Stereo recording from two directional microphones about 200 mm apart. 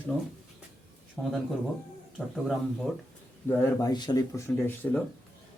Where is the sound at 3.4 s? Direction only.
10° left (ahead or behind).